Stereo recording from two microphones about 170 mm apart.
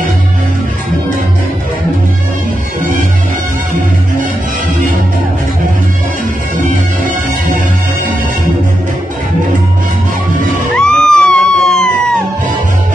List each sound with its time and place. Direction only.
10.8 s music: 5° left (ahead or behind)